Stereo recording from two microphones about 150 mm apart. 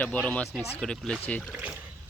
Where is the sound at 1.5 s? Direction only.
10° right (ahead or behind).